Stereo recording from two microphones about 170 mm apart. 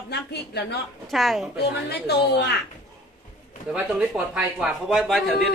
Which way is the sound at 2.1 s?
75° left (ahead or behind).